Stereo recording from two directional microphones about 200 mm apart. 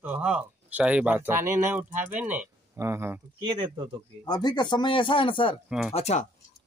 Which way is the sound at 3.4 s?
25° right (ahead or behind).